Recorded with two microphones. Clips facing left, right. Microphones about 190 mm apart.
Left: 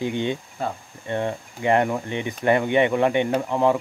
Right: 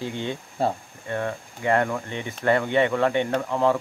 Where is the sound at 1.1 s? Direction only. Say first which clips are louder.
Left 2 dB; 20° left (ahead or behind).